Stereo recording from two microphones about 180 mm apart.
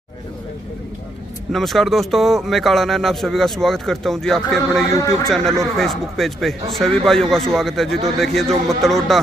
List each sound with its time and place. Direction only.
1.5 s speech: centre (ahead or behind)
4.9 s a man's voice: 20° left (ahead or behind)
5.3 s speech: centre (ahead or behind)